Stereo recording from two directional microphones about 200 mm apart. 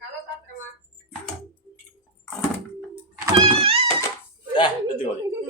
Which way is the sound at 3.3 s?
30° right (ahead or behind).